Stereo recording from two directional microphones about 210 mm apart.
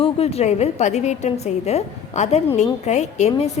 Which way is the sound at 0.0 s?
30° left (ahead or behind).